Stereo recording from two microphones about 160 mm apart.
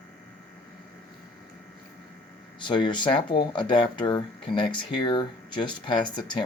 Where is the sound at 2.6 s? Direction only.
30° left (ahead or behind).